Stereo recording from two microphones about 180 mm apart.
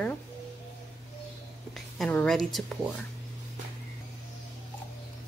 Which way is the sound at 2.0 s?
5° left (ahead or behind).